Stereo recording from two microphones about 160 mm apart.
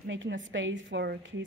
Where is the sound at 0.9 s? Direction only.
90° right.